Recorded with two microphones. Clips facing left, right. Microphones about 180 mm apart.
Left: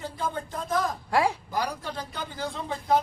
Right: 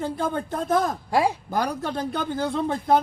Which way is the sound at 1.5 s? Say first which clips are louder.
Right 5 dB; 55° right (ahead or behind).